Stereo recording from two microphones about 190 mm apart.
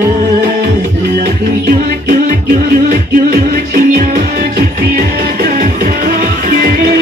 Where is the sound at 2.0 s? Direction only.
50° right (ahead or behind).